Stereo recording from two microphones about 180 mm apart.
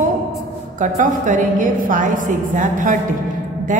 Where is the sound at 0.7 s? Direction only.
45° right (ahead or behind).